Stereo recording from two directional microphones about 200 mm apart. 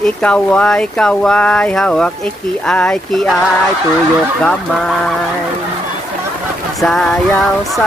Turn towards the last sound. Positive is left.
turn(degrees=0)  # may be behind; listen again after turning